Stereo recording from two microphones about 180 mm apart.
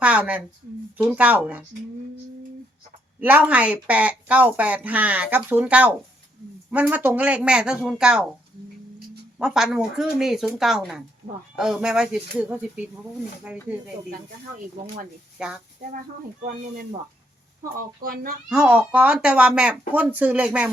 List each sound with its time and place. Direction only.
0.0 s speech: 5° right (ahead or behind)
3.2 s speech: 10° right (ahead or behind)
9.4 s speech: 5° right (ahead or behind)
15.4 s speech: 5° right (ahead or behind)
17.7 s speech: 55° right (ahead or behind)
18.4 s speech: 5° right (ahead or behind)